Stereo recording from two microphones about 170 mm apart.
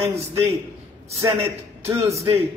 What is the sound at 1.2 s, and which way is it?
Speech, 15° right (ahead or behind).